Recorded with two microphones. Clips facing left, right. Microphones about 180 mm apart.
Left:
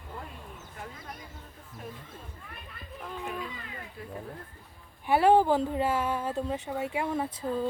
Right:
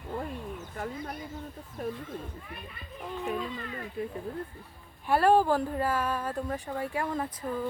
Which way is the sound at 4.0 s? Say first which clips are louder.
Right 11 dB; 20° right (ahead or behind).